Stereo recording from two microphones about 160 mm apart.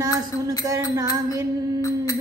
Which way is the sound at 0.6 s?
20° right (ahead or behind).